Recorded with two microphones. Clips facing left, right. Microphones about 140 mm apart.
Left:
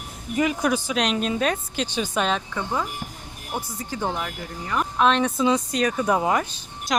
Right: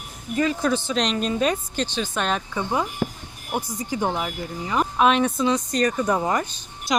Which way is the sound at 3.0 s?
90° right.